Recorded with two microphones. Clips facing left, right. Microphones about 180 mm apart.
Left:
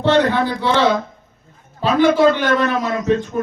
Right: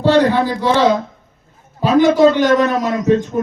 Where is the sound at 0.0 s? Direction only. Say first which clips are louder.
Right 3 dB; 10° right (ahead or behind).